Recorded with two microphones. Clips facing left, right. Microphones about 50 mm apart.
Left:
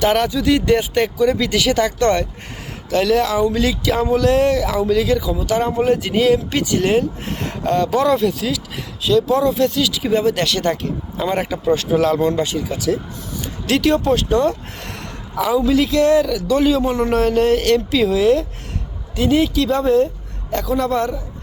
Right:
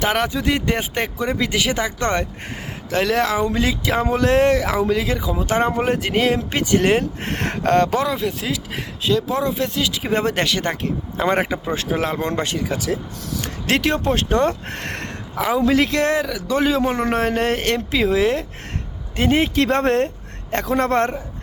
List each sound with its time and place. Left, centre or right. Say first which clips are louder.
0.0 s speech: left 4 dB; right
2.9 s speech: left 3 dB; right
8.2 s speech: left 4 dB; right
10.4 s speech: left 2 dB; right
12.2 s speech: left 4 dB; right
20.5 s speech: even; right